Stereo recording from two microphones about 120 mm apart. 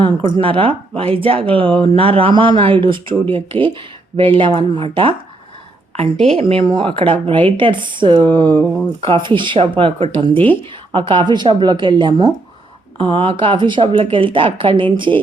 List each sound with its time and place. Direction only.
0.0 s speech: 45° right (ahead or behind)
6.3 s speech: 50° right (ahead or behind)
10.3 s speech: 15° left (ahead or behind)
10.9 s a woman's voice: 40° right (ahead or behind)
13.0 s speech: 45° right (ahead or behind)